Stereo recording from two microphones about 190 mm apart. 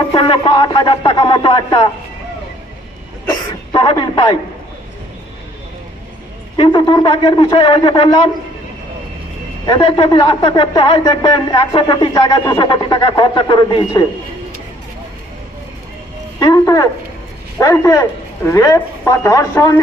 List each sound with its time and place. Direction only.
0.1 s a man's voice: 25° left (ahead or behind)
3.7 s speech: 25° left (ahead or behind)
6.6 s a man's voice: 25° left (ahead or behind)
9.6 s a man's voice: 25° left (ahead or behind)
16.4 s a man's voice: 20° left (ahead or behind)